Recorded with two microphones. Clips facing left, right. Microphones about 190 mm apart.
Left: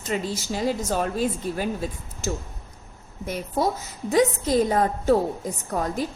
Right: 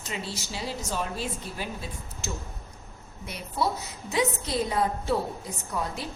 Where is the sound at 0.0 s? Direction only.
50° left (ahead or behind).